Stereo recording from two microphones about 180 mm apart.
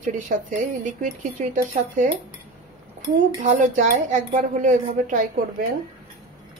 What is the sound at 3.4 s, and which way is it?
Speech, 45° right (ahead or behind).